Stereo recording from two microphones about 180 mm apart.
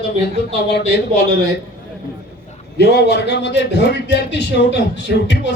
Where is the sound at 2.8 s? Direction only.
65° left (ahead or behind).